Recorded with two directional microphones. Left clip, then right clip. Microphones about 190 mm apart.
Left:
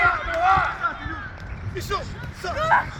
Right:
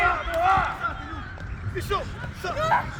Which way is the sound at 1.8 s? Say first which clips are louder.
Even; 40° left (ahead or behind).